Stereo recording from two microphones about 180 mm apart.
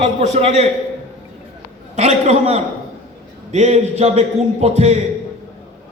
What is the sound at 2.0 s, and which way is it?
A man's voice, 40° right (ahead or behind).